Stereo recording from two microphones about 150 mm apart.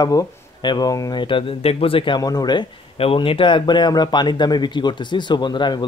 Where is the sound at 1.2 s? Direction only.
35° left (ahead or behind).